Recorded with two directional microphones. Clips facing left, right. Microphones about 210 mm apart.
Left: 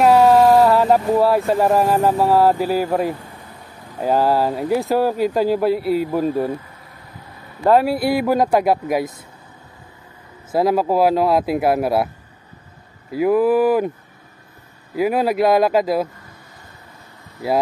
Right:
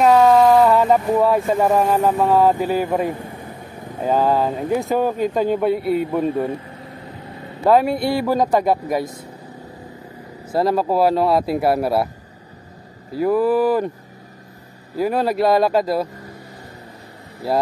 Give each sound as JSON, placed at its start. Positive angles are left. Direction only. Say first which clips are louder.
{"t": 0.0, "sound": "a sound", "louder": "left 1 dB", "side_deg": 10}
{"t": 1.5, "sound": "speech", "louder": "left 1 dB", "side_deg": 5}
{"t": 6.9, "sound": "vehicle", "louder": "right 6 dB", "side_deg": -25}
{"t": 7.6, "sound": "speech", "louder": "even", "side_deg": 0}
{"t": 10.5, "sound": "speech", "louder": "left 1 dB", "side_deg": 5}
{"t": 13.2, "sound": "speech", "louder": "left 2 dB", "side_deg": 10}
{"t": 15.0, "sound": "speech", "louder": "left 1 dB", "side_deg": 5}